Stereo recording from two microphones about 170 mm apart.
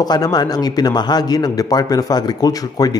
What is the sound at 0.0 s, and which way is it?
A man's voice, 25° left (ahead or behind).